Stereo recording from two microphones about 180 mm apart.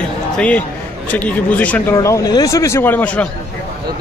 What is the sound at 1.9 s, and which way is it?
Speech, 20° left (ahead or behind).